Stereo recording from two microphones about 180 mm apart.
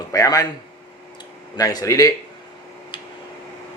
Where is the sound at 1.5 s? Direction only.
20° left (ahead or behind).